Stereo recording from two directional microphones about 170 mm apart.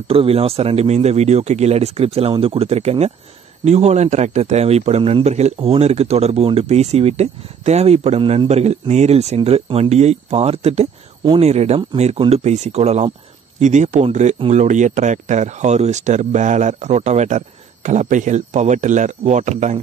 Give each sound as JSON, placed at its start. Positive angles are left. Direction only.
{"t": 0.1, "sound": "a man's voice", "side_deg": -35}